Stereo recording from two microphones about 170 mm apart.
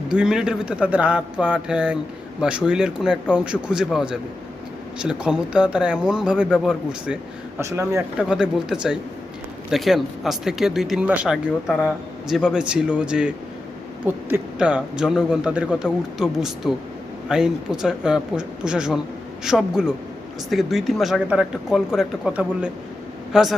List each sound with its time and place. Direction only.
0.1 s a man's voice: 5° right (ahead or behind)
7.6 s speech: 15° right (ahead or behind)
8.3 s a man's voice: 5° right (ahead or behind)